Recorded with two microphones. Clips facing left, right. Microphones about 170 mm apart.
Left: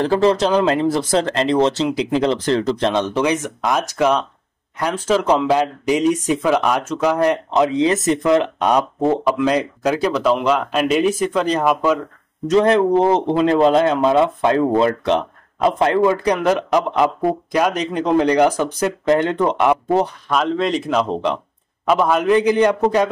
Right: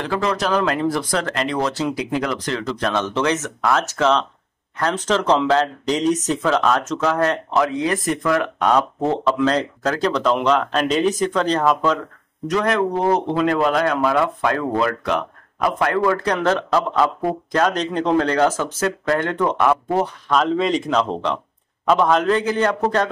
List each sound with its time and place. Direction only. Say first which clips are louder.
0.0 s speech: left 6 dB; 30° left (ahead or behind)
2.9 s speech: left 2 dB; 15° left (ahead or behind)
12.4 s speech: left 6 dB; 30° left (ahead or behind)
20.2 s speech: even; centre (ahead or behind)